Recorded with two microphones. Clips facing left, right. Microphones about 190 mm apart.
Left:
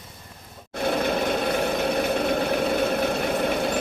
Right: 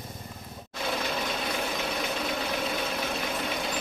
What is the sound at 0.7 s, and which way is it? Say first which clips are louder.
Vehicle: left 8 dB; 55° left (ahead or behind).